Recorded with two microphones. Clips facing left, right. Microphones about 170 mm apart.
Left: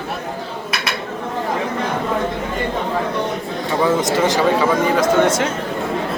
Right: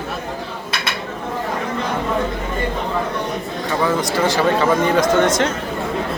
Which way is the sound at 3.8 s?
20° left (ahead or behind).